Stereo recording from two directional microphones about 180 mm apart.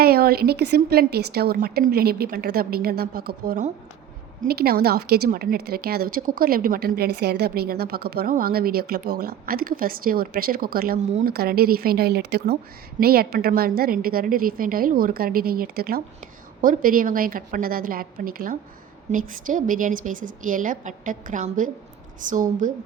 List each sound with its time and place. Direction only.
0.0 s a woman's voice: 60° right (ahead or behind)